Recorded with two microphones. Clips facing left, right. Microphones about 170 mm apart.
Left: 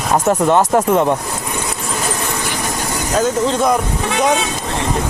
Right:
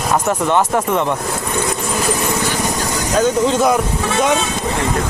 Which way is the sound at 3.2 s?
Centre (ahead or behind).